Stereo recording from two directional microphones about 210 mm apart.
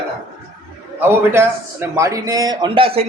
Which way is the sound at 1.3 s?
10° right (ahead or behind).